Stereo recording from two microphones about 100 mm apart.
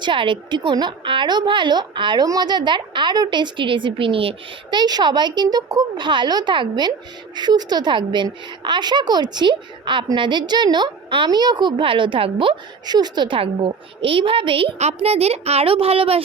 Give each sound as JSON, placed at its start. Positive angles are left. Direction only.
{"t": 0.0, "sound": "a woman's voice", "side_deg": -55}
{"t": 2.2, "sound": "a woman's voice", "side_deg": -40}
{"t": 4.8, "sound": "a woman's voice", "side_deg": -45}
{"t": 11.8, "sound": "a woman's voice", "side_deg": -60}